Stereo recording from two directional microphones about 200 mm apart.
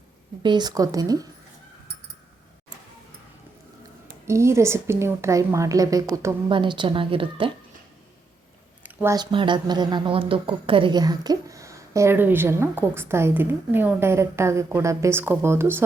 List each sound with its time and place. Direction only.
0.4 s a woman's voice: 20° right (ahead or behind)
4.3 s a woman's voice: 15° right (ahead or behind)
8.8 s a sound: 10° right (ahead or behind)
9.1 s a woman's voice: 25° right (ahead or behind)